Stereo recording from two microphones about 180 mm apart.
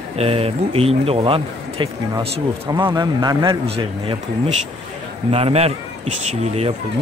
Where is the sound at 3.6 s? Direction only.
30° right (ahead or behind).